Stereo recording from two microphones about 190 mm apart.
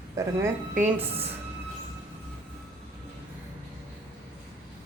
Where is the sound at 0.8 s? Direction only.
10° right (ahead or behind).